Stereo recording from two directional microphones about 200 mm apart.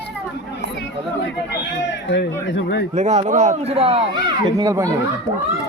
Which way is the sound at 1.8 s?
60° left (ahead or behind).